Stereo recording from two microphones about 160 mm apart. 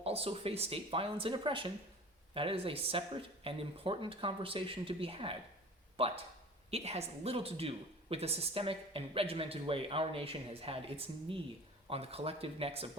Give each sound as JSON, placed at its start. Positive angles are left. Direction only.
{"t": 0.0, "sound": "a woman's voice", "side_deg": -40}